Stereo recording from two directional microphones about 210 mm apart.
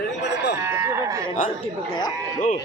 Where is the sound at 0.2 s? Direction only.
55° left (ahead or behind).